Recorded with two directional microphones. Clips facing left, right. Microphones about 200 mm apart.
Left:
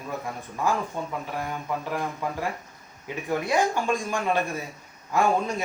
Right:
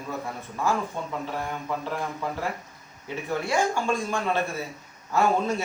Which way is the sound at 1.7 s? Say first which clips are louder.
Left 1 dB; 15° left (ahead or behind).